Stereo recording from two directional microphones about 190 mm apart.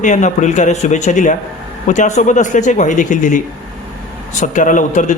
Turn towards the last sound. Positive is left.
turn(degrees=45)  # may be behind; listen again after turning